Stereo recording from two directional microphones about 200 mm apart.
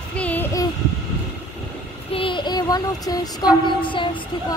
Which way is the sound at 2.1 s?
25° left (ahead or behind).